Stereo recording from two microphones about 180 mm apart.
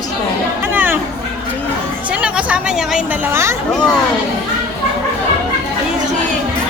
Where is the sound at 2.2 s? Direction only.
5° right (ahead or behind).